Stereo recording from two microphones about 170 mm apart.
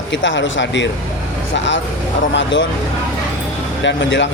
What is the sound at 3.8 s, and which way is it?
Speech, 90° left.